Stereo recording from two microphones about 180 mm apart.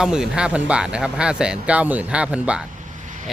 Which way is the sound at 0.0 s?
5° right (ahead or behind).